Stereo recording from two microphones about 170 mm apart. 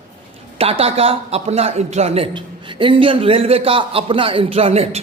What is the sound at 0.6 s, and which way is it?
A man's voice, 35° right (ahead or behind).